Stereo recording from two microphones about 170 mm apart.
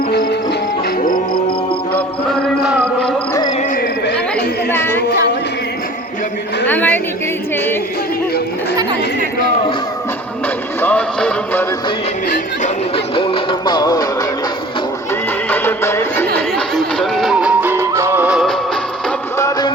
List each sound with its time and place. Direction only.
0.1 s music: 70° left (ahead or behind)
2.6 s a sound: centre (ahead or behind)
6.7 s a sound: 10° left (ahead or behind)
10.8 s music: 10° left (ahead or behind)
13.1 s music: 30° left (ahead or behind)
15.4 s music: 10° left (ahead or behind)
16.7 s music: centre (ahead or behind)
19.4 s music: 20° left (ahead or behind)